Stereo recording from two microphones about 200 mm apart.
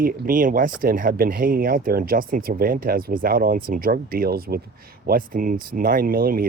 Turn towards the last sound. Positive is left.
turn(degrees=-45)  # may be behind; listen again after turning